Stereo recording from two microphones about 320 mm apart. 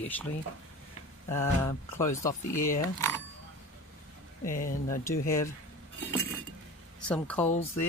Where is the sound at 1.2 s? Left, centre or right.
Centre.